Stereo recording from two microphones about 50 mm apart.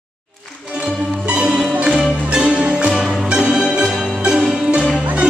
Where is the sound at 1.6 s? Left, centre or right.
Centre.